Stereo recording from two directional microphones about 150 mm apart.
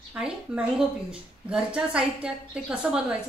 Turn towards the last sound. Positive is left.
turn(degrees=-5)  # may be behind; listen again after turning